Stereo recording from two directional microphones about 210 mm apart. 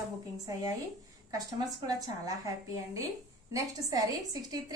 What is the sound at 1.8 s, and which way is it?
A woman's voice, 20° right (ahead or behind).